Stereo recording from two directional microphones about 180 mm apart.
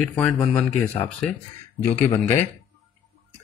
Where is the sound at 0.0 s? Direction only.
5° left (ahead or behind).